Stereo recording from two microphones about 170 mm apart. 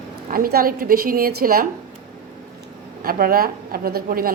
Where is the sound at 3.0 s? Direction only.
60° right (ahead or behind).